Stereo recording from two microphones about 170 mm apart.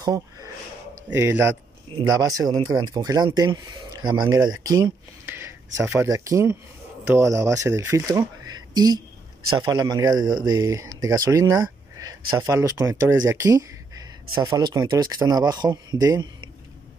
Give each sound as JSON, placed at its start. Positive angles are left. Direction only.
{"t": 0.0, "sound": "speech", "side_deg": -20}
{"t": 8.2, "sound": "a sound", "side_deg": -25}
{"t": 9.6, "sound": "speech", "side_deg": -25}